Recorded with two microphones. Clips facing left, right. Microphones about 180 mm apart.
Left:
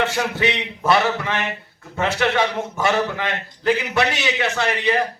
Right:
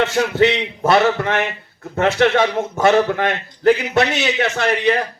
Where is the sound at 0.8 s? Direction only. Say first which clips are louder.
Right 4 dB; 50° right (ahead or behind).